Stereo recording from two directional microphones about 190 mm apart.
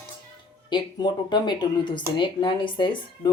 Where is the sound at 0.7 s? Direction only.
25° left (ahead or behind).